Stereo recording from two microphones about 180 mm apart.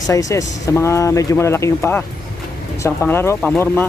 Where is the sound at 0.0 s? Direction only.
20° left (ahead or behind).